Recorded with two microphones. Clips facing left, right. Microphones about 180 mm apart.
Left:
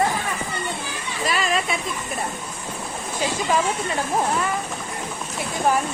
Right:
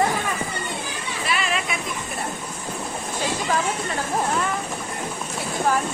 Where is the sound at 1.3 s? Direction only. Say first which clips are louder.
Left 3 dB; 40° left (ahead or behind).